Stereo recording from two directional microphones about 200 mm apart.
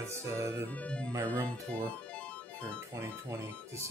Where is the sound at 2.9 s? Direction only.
15° right (ahead or behind).